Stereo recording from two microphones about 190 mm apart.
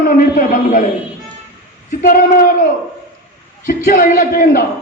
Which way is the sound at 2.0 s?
45° left (ahead or behind).